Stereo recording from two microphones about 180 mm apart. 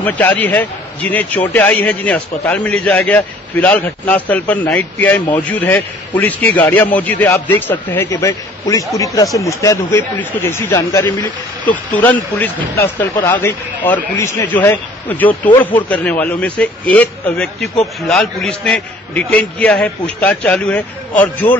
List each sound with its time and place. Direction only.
0.0 s a man's voice: 10° left (ahead or behind)